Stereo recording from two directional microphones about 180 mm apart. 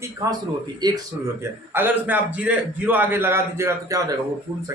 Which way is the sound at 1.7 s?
10° right (ahead or behind).